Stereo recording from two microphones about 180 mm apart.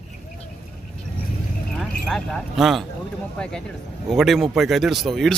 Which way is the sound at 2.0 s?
Centre (ahead or behind).